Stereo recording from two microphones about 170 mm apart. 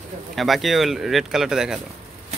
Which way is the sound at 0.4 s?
Centre (ahead or behind).